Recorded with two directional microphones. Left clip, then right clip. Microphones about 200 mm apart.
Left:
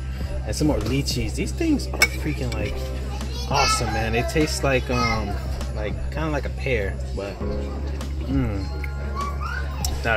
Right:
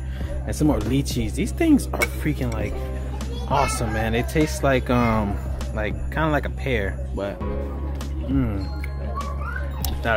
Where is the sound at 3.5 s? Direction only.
15° right (ahead or behind).